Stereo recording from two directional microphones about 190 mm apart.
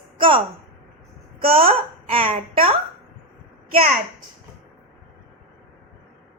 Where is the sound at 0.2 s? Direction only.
25° right (ahead or behind).